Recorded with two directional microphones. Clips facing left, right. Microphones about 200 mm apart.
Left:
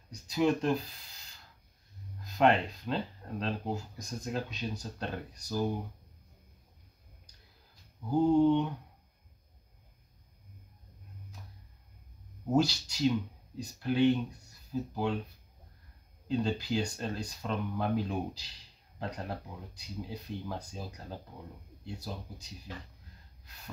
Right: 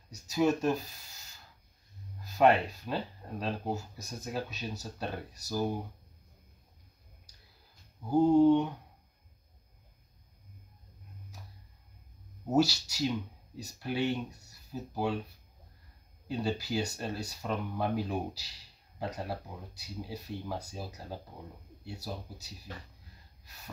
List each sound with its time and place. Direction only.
0.1 s speech: 5° right (ahead or behind)
2.3 s speech: 5° right (ahead or behind)
8.1 s speech: 10° right (ahead or behind)
12.4 s speech: 10° right (ahead or behind)
16.3 s speech: 10° right (ahead or behind)